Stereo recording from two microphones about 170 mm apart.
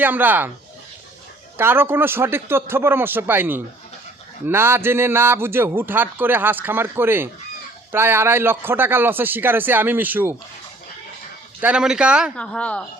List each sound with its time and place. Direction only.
0.0 s a man's voice: 10° right (ahead or behind)
1.5 s a man's voice: 15° right (ahead or behind)
11.6 s speech: 5° right (ahead or behind)
12.4 s speech: 5° left (ahead or behind)